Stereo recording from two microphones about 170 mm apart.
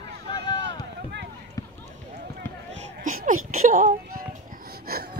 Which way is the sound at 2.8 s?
50° right (ahead or behind).